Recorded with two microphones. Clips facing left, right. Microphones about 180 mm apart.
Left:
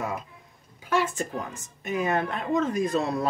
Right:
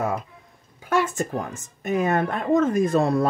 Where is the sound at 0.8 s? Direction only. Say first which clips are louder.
Right 3 dB; 50° right (ahead or behind).